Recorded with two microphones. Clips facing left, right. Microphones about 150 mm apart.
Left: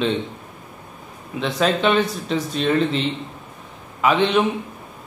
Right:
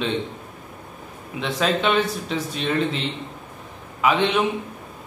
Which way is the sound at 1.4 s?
5° right (ahead or behind).